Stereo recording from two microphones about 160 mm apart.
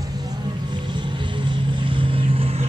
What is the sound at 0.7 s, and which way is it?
Vehicle, 30° right (ahead or behind).